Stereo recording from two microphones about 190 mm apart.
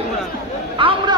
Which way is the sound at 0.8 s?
25° right (ahead or behind).